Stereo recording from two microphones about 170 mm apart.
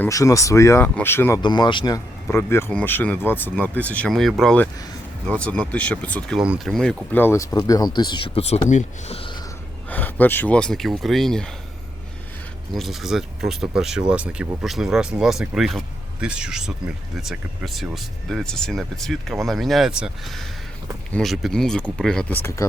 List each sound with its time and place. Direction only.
0.0 s speech: 20° left (ahead or behind)
1.4 s speech: 25° left (ahead or behind)
2.3 s speech: 15° left (ahead or behind)
7.5 s speech: 25° left (ahead or behind)
9.9 s speech: 10° left (ahead or behind)
12.7 s speech: centre (ahead or behind)